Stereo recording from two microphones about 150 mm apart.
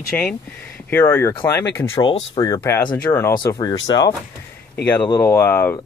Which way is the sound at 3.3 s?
30° left (ahead or behind).